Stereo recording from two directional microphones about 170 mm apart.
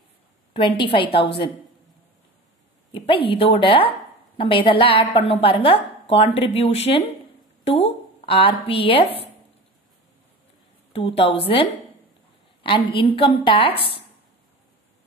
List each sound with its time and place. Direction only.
0.5 s a sound: 30° left (ahead or behind)
0.8 s a woman's voice: 30° left (ahead or behind)
2.9 s a woman's voice: 30° left (ahead or behind)
11.1 s a woman's voice: 35° left (ahead or behind)
12.9 s a woman's voice: 30° left (ahead or behind)